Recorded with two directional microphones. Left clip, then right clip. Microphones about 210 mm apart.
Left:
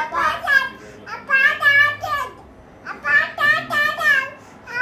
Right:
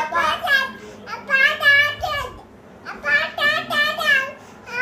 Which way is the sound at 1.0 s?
10° right (ahead or behind).